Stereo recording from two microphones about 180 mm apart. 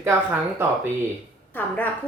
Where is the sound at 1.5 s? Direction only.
10° left (ahead or behind).